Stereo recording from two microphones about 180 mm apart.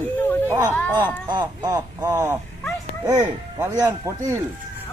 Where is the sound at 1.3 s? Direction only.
25° right (ahead or behind).